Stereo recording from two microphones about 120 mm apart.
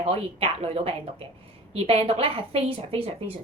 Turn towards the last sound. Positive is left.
turn(degrees=-55)  # may be behind; listen again after turning